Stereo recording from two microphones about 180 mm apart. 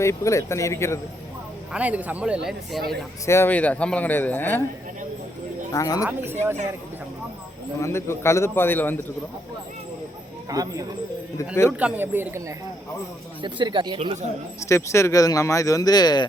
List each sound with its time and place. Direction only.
0.0 s speech: 15° left (ahead or behind)
1.7 s speech: 10° right (ahead or behind)
3.2 s speech: 15° left (ahead or behind)
5.7 s speech: 20° left (ahead or behind)
6.1 s speech: 10° right (ahead or behind)
7.8 s speech: 15° left (ahead or behind)
10.5 s speech: 20° right (ahead or behind)
11.3 s speech: 15° left (ahead or behind)
11.8 s speech: 10° right (ahead or behind)
13.4 s speech: 25° right (ahead or behind)
14.6 s speech: 15° left (ahead or behind)